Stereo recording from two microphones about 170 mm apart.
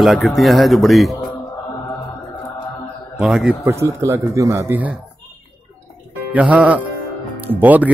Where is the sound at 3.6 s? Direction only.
15° right (ahead or behind).